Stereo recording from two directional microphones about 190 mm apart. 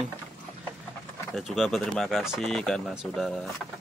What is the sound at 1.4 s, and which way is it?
Speech, centre (ahead or behind).